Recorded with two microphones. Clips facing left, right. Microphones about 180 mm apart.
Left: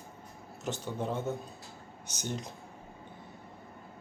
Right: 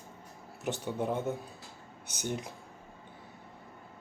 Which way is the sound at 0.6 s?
15° right (ahead or behind).